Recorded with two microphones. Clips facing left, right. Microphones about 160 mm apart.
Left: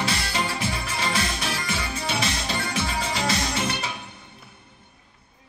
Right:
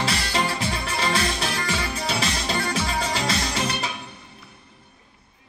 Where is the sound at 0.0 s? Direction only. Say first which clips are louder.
Right 2 dB; 30° right (ahead or behind).